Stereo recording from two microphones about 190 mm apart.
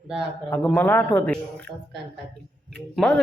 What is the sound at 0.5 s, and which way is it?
Speech, 5° left (ahead or behind).